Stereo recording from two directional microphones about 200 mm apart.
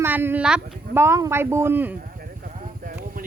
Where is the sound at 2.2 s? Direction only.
40° right (ahead or behind).